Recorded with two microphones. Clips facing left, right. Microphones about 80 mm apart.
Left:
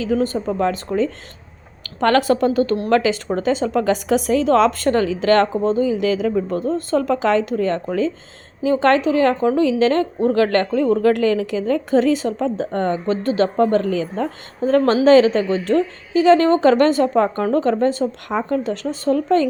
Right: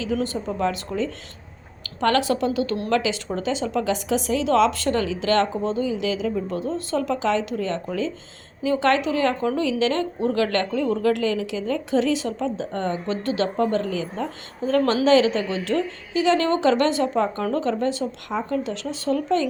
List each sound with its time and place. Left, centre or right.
0.0 s a woman's voice: left